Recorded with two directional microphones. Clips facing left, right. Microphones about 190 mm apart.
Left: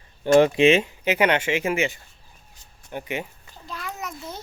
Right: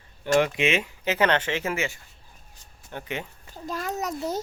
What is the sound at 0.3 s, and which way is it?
Speech, 30° left (ahead or behind).